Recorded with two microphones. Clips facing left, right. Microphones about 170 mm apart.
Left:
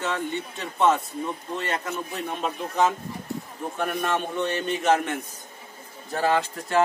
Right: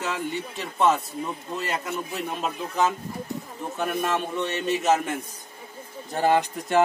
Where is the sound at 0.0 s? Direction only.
Centre (ahead or behind).